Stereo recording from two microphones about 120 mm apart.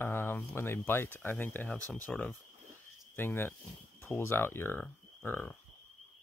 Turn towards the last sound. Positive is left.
turn(degrees=15)  # may be behind; listen again after turning